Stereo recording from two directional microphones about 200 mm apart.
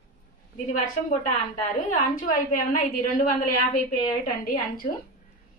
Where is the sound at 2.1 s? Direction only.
45° left (ahead or behind).